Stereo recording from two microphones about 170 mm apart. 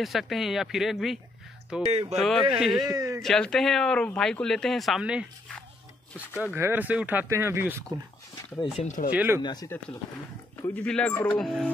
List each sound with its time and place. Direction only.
0.0 s speech: centre (ahead or behind)
1.9 s speech: 35° right (ahead or behind)
2.1 s speech: centre (ahead or behind)
2.9 s speech: 20° right (ahead or behind)
3.2 s speech: 5° left (ahead or behind); by 7.8 s 15° right (ahead or behind)
8.7 s speech: 45° left (ahead or behind)
9.1 s speech: 10° right (ahead or behind)
9.4 s speech: 25° left (ahead or behind)
10.6 s speech: 10° left (ahead or behind)